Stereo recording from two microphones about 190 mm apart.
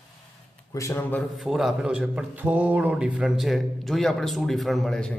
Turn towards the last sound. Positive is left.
turn(degrees=5)  # may be behind; listen again after turning